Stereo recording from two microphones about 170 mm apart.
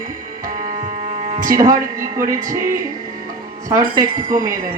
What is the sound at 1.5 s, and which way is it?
Speech, 20° right (ahead or behind).